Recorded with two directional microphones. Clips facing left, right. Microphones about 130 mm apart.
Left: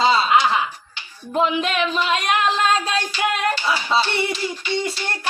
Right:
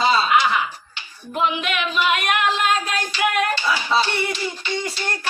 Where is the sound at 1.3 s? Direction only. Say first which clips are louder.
Left 3 dB; 35° left (ahead or behind).